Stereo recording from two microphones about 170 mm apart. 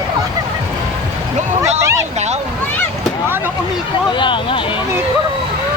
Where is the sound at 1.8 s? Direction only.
15° right (ahead or behind).